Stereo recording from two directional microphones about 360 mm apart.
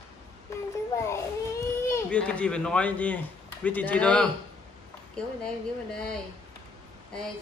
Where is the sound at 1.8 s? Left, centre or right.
Centre.